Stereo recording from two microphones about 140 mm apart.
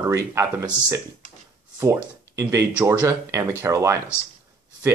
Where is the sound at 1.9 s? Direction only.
20° right (ahead or behind).